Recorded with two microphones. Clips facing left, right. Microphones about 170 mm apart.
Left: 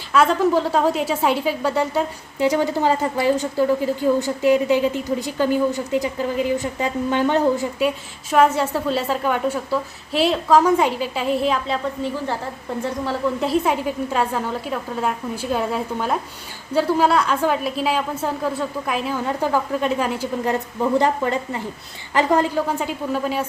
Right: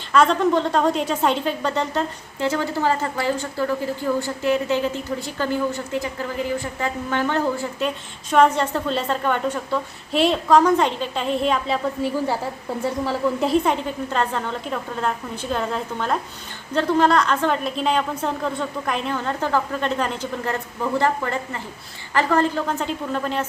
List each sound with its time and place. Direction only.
0.1 s a woman's voice: 5° left (ahead or behind)